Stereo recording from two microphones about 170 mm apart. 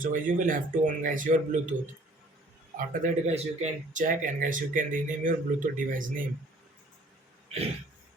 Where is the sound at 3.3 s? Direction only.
40° right (ahead or behind).